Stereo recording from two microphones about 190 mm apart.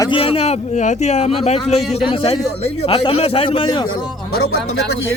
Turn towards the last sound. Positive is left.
turn(degrees=30)  # may be behind; listen again after turning